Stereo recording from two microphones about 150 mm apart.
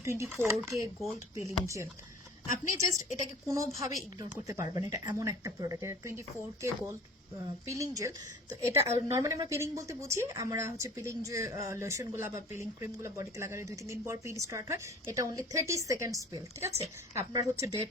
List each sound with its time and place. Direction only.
0.0 s speech: 20° right (ahead or behind)